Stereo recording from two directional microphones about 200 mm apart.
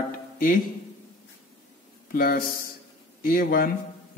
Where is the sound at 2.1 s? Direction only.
45° left (ahead or behind).